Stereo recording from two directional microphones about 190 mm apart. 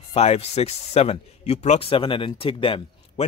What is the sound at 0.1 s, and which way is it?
A man's voice, 30° left (ahead or behind).